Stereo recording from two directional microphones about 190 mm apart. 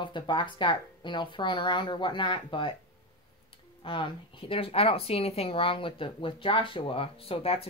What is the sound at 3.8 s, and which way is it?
Speech, 25° left (ahead or behind).